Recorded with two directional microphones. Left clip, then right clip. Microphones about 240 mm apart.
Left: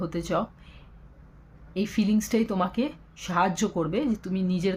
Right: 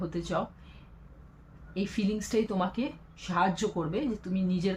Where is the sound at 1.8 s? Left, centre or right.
Left.